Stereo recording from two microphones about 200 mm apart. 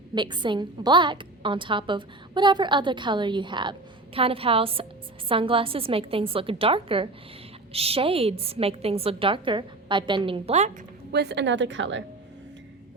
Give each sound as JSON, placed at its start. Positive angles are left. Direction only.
{"t": 0.1, "sound": "a woman's voice", "side_deg": -25}
{"t": 11.1, "sound": "speech", "side_deg": -55}